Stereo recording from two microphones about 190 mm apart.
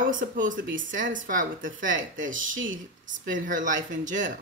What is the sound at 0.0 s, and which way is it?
Speech, 45° right (ahead or behind).